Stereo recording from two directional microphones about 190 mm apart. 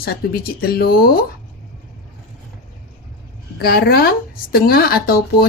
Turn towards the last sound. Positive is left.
turn(degrees=55)  # may be behind; listen again after turning